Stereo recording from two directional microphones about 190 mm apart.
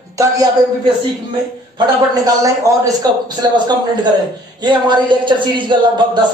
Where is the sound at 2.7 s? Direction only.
15° right (ahead or behind).